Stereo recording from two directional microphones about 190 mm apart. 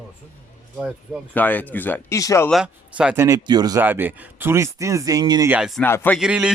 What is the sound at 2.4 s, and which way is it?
Speech, 5° right (ahead or behind).